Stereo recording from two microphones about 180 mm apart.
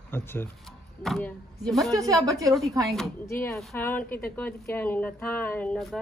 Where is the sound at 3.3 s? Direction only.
15° left (ahead or behind).